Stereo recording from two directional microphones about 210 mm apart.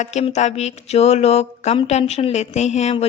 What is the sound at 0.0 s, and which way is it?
A woman's voice, 30° left (ahead or behind).